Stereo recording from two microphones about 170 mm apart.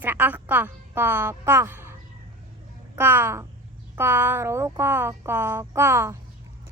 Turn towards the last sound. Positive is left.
turn(degrees=-15)  # may be behind; listen again after turning